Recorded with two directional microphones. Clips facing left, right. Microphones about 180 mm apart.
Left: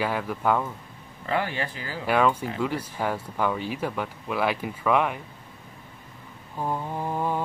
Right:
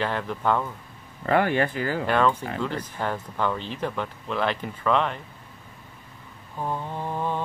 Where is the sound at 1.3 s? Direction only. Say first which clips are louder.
Right 6 dB; 55° right (ahead or behind).